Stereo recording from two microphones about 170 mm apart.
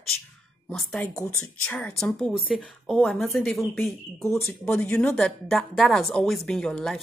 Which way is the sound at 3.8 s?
15° left (ahead or behind).